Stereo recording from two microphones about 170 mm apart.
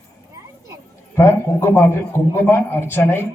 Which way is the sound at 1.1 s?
15° left (ahead or behind).